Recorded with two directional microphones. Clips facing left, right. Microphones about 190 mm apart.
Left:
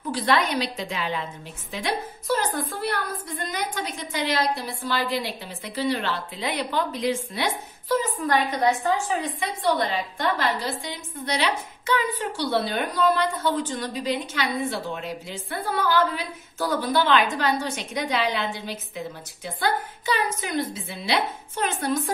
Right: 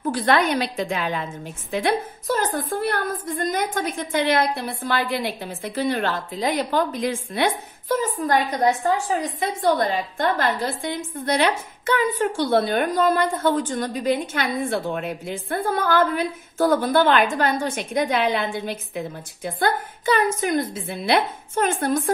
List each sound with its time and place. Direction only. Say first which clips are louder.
0.0 s a woman's voice: right 4 dB; 50° right (ahead or behind)